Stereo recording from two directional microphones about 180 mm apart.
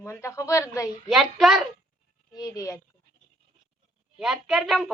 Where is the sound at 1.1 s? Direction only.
Centre (ahead or behind).